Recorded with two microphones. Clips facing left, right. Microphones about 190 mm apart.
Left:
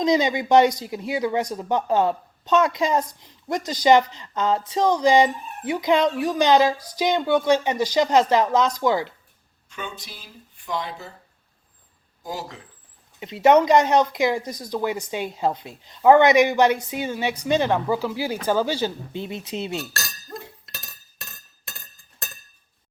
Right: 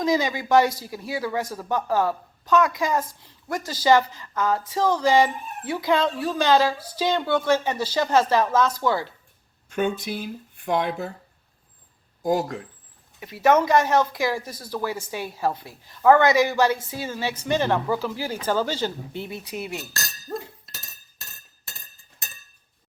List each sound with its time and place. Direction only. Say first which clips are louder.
0.0 s speech: left 3 dB; 20° left (ahead or behind)
9.6 s speech: right 11 dB; 50° right (ahead or behind)
12.2 s speech: right 10 dB; 50° right (ahead or behind)
13.1 s speech: left 3 dB; 20° left (ahead or behind)